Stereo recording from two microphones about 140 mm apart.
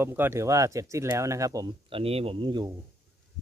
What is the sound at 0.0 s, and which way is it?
Speech, 15° right (ahead or behind).